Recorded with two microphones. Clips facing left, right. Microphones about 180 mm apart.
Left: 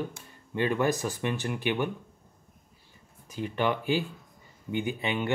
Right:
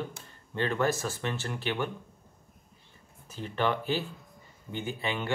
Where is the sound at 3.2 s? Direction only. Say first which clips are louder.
Left 1 dB; 15° left (ahead or behind).